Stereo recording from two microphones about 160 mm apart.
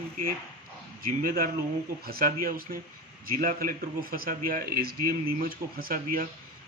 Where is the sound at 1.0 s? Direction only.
65° right (ahead or behind).